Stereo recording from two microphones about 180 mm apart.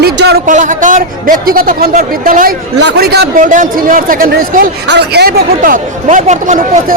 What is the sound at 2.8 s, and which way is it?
Speech, 70° right (ahead or behind).